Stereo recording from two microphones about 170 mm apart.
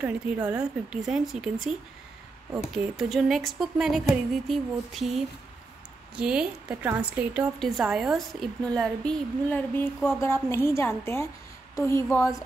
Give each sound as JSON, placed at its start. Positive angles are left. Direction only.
{"t": 0.5, "sound": "a woman's voice", "side_deg": -5}